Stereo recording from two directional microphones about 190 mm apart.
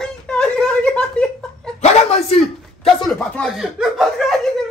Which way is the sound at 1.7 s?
35° left (ahead or behind).